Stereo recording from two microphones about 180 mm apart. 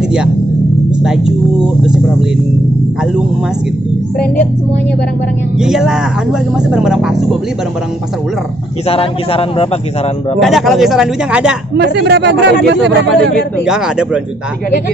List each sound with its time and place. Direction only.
1.0 s speech: 5° right (ahead or behind)
5.6 s speech: 5° right (ahead or behind)
8.8 s speech: 30° left (ahead or behind)
10.4 s speech: centre (ahead or behind)
11.7 s speech: 75° right (ahead or behind)
13.7 s speech: 5° right (ahead or behind)